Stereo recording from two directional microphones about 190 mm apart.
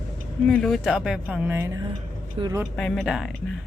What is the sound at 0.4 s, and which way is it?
Speech, centre (ahead or behind).